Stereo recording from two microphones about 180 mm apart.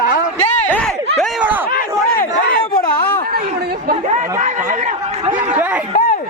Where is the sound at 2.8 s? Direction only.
55° left (ahead or behind).